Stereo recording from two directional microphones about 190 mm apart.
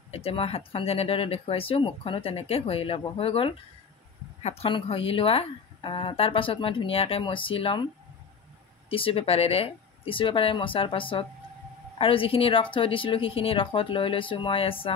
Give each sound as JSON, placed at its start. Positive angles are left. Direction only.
{"t": 0.1, "sound": "a woman's voice", "side_deg": 30}
{"t": 8.9, "sound": "a woman's voice", "side_deg": 30}